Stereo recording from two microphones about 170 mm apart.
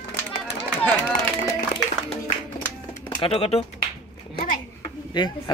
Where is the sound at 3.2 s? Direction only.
35° left (ahead or behind).